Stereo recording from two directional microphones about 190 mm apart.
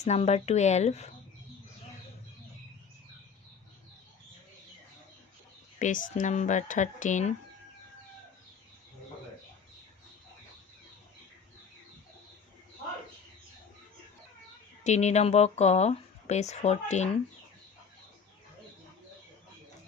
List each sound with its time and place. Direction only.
0.0 s speech: 35° left (ahead or behind)
5.8 s speech: 45° left (ahead or behind)
14.8 s speech: 35° left (ahead or behind)